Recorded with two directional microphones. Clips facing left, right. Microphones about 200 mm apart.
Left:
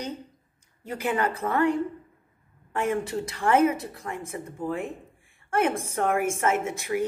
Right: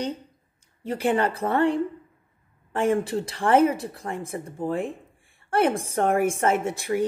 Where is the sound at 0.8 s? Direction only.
30° right (ahead or behind).